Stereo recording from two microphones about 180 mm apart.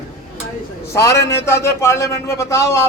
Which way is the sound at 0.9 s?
15° left (ahead or behind).